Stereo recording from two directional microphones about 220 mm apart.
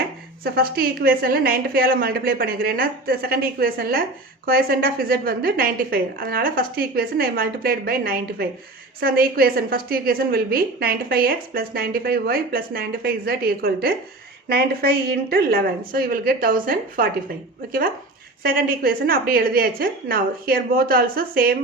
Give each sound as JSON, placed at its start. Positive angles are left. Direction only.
{"t": 0.4, "sound": "a woman's voice", "side_deg": -45}